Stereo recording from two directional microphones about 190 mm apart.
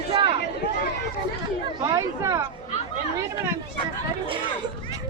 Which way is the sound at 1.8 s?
20° right (ahead or behind).